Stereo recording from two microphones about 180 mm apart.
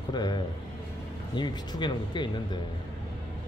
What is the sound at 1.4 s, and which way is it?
Speech, 25° left (ahead or behind).